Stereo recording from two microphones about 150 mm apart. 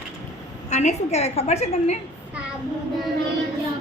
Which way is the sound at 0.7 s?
50° left (ahead or behind).